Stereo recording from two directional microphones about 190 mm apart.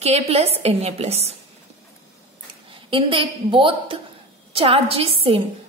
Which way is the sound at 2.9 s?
25° right (ahead or behind).